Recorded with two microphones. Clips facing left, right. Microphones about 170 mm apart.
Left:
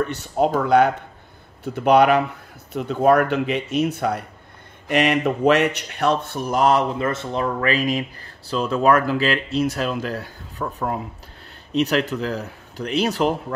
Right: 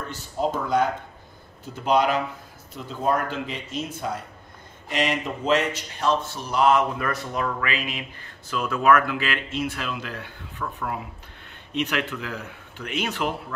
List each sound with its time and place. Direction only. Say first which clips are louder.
0.0 s speech: left 7 dB; 70° left (ahead or behind); by 13.4 s 35° left (ahead or behind)